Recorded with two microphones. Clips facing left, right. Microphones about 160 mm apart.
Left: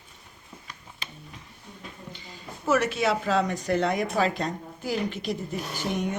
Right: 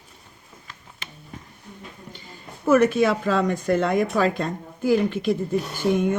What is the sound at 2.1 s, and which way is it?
Speech, 50° right (ahead or behind).